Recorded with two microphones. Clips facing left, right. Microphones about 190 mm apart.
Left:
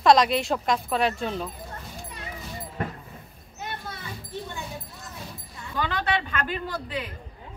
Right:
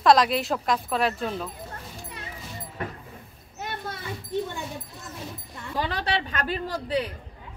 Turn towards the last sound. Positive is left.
turn(degrees=-35)  # may be behind; listen again after turning